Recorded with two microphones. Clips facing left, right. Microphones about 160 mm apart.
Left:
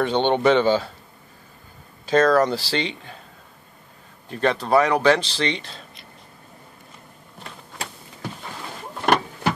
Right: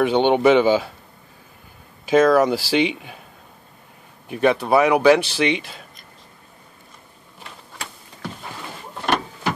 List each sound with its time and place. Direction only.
0.0 s speech: 10° right (ahead or behind)
2.0 s speech: 10° right (ahead or behind)
4.3 s speech: 10° right (ahead or behind)